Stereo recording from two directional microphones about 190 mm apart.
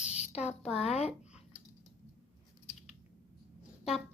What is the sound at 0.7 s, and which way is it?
Speech, 35° left (ahead or behind).